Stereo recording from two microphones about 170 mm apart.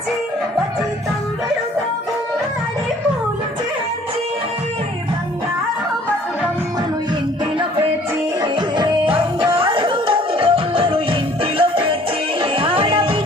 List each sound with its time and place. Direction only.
8.4 s music: 25° right (ahead or behind)